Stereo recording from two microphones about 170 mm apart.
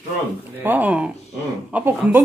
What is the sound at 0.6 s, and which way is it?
Speech, 10° right (ahead or behind).